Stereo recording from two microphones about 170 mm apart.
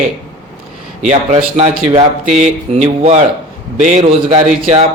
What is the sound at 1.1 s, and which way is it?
A man's voice, 40° right (ahead or behind).